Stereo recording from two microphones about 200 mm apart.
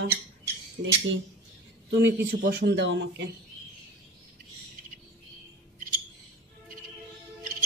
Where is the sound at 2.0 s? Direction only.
55° right (ahead or behind).